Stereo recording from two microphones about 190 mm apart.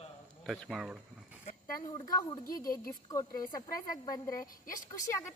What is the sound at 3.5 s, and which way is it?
Speech, 20° left (ahead or behind).